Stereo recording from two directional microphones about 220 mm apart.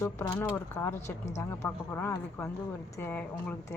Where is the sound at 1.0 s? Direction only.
30° left (ahead or behind).